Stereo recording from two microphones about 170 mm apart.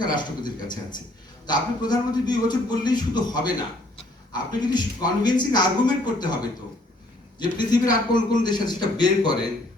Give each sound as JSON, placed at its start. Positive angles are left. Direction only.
{"t": 0.0, "sound": "speech", "side_deg": 25}
{"t": 7.7, "sound": "speech", "side_deg": 25}